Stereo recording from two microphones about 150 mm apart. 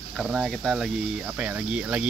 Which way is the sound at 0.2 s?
5° right (ahead or behind).